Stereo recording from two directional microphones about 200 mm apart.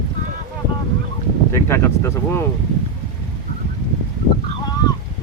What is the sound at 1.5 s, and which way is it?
Speech, 15° left (ahead or behind).